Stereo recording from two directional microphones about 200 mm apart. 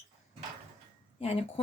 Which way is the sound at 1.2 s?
30° left (ahead or behind).